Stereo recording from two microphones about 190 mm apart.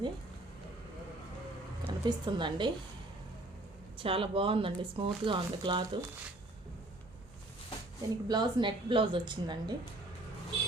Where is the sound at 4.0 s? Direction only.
30° right (ahead or behind).